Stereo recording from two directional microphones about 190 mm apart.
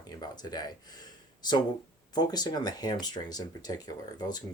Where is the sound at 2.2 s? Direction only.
20° left (ahead or behind).